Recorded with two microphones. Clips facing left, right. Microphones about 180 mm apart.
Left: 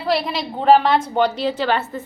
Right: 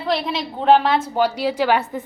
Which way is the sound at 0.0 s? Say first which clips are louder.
Left 1 dB; 5° left (ahead or behind).